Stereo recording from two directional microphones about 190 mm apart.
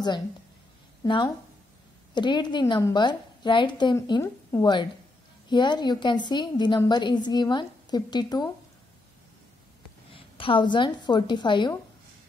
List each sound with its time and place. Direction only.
1.0 s a woman's voice: 25° left (ahead or behind)
10.1 s a woman's voice: 25° left (ahead or behind)